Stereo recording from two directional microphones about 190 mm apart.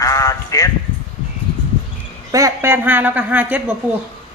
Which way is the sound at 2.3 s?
15° right (ahead or behind).